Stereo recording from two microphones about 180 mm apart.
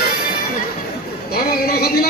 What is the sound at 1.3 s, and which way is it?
Speech, 60° left (ahead or behind).